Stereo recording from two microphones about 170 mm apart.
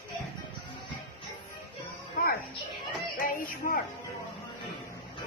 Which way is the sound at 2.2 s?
60° left (ahead or behind).